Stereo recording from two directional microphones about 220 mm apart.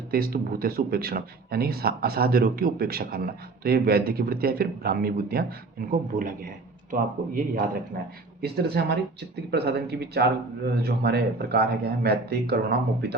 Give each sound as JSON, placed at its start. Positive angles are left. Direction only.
{"t": 0.1, "sound": "speech", "side_deg": -45}